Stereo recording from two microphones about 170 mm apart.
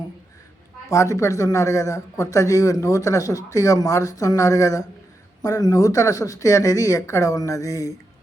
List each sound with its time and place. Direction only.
0.9 s a man's voice: 20° left (ahead or behind)